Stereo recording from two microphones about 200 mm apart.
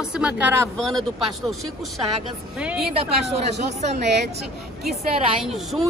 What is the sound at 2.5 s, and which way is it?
Speech, 5° right (ahead or behind).